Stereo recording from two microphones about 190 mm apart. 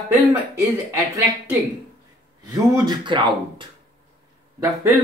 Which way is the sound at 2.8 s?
25° right (ahead or behind).